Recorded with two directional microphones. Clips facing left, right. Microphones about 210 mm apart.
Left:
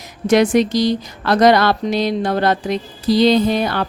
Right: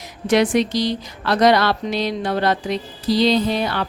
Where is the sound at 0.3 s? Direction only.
45° left (ahead or behind).